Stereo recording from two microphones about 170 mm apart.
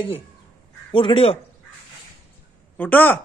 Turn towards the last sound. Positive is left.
turn(degrees=10)  # may be behind; listen again after turning